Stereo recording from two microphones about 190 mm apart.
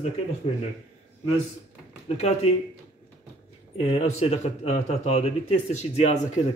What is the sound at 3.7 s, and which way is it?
Speech, 30° left (ahead or behind).